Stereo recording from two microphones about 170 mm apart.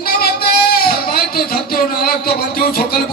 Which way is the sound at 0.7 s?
60° left (ahead or behind).